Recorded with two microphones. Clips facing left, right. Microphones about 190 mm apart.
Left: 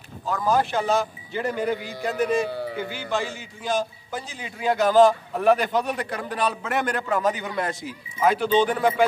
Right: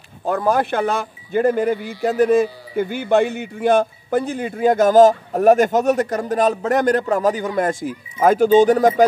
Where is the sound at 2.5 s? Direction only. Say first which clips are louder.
Left 10 dB; 60° left (ahead or behind).